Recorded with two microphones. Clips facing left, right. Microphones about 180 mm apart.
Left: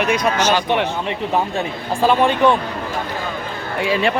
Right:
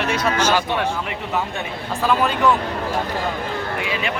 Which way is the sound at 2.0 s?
25° left (ahead or behind).